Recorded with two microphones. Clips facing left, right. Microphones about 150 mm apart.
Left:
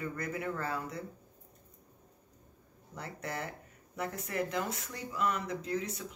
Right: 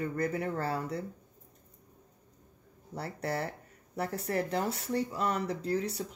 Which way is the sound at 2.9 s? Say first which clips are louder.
Right 5 dB; 35° right (ahead or behind).